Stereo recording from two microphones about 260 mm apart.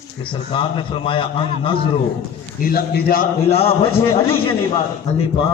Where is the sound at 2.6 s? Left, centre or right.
Left.